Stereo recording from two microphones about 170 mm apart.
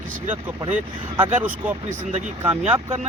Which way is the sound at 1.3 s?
10° right (ahead or behind).